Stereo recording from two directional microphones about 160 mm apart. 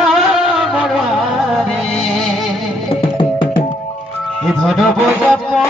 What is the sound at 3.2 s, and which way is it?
Music, 30° left (ahead or behind).